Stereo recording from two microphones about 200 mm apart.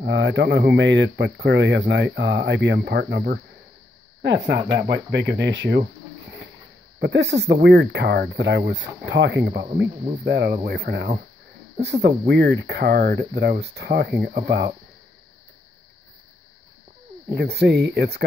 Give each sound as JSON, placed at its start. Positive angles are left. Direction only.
{"t": 0.0, "sound": "speech", "side_deg": -60}
{"t": 7.0, "sound": "speech", "side_deg": -60}
{"t": 17.3, "sound": "speech", "side_deg": -55}